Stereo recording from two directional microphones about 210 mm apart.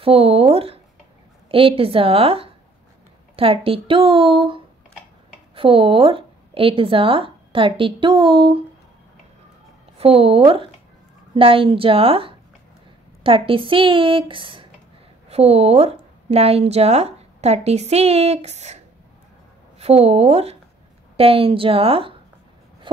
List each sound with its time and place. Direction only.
0.0 s a woman's voice: 25° right (ahead or behind)
9.9 s a woman's voice: 30° right (ahead or behind)
19.8 s speech: 30° right (ahead or behind)